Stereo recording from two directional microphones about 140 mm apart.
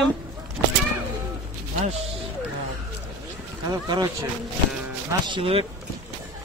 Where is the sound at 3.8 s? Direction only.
30° right (ahead or behind).